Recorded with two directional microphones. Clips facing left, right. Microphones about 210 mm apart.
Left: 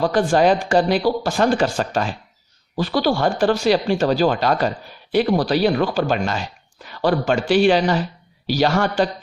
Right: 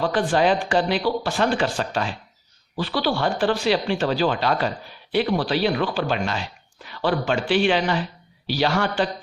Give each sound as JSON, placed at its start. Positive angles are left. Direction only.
{"t": 0.0, "sound": "speech", "side_deg": 45}